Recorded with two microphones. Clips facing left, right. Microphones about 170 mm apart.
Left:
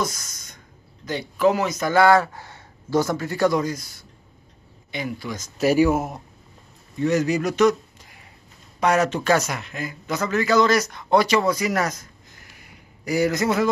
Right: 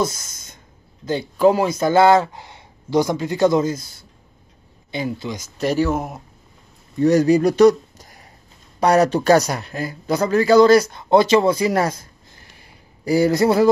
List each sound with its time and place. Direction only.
0.0 s a sound: 25° right (ahead or behind)
1.0 s speech: 30° right (ahead or behind)
5.6 s speech: 10° left (ahead or behind)
7.0 s speech: 35° right (ahead or behind)